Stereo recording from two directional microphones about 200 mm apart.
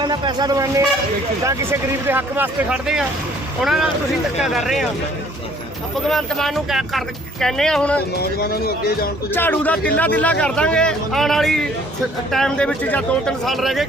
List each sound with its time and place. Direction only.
0.0 s speech: 20° right (ahead or behind); by 4.9 s centre (ahead or behind)
6.1 s speech: centre (ahead or behind)
8.2 s speech: 50° left (ahead or behind)
9.3 s speech: 10° left (ahead or behind)